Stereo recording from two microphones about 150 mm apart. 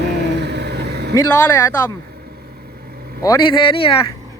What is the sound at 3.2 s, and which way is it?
Speech, 25° left (ahead or behind).